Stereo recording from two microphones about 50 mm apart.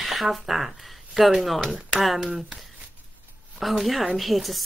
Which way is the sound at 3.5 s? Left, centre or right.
Centre.